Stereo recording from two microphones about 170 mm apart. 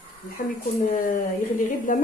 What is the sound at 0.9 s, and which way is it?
A woman's voice, 50° left (ahead or behind).